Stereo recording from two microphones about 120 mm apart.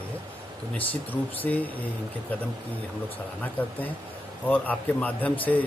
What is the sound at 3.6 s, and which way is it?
A man's voice, 15° left (ahead or behind).